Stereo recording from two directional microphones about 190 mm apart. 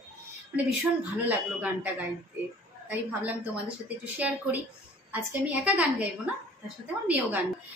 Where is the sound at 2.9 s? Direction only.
10° right (ahead or behind).